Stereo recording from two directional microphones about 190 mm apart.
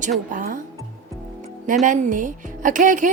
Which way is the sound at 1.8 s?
45° right (ahead or behind).